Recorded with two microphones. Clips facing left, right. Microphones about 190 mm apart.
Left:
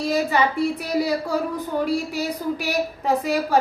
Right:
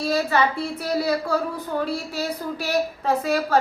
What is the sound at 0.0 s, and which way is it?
A woman's voice, 15° left (ahead or behind).